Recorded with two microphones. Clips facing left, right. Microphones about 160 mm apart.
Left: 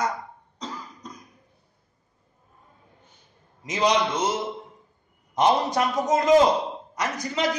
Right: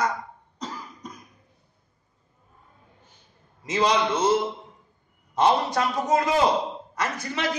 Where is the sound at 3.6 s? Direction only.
15° left (ahead or behind).